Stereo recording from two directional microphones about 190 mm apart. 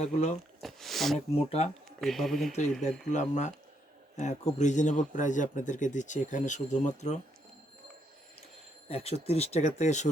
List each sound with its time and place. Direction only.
0.0 s speech: 35° left (ahead or behind)
0.6 s a sound: centre (ahead or behind)
1.5 s speech: 35° left (ahead or behind)
2.0 s speech: centre (ahead or behind)
3.1 s speech: 40° left (ahead or behind)
8.9 s speech: 30° left (ahead or behind)